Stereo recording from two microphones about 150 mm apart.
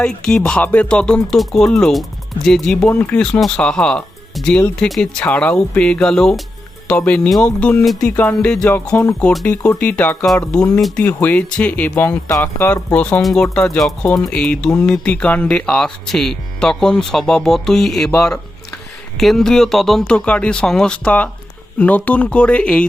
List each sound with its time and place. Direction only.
0.0 s speech: 5° left (ahead or behind)
11.0 s speech: 10° left (ahead or behind)